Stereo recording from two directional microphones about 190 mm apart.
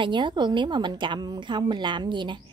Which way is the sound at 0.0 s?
25° right (ahead or behind).